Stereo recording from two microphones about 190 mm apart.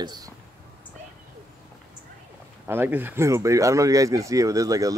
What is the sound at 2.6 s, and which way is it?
Speech, 10° right (ahead or behind).